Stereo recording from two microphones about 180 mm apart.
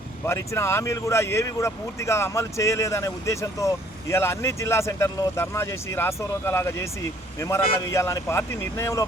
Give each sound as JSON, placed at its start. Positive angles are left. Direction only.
{"t": 0.3, "sound": "speech", "side_deg": 15}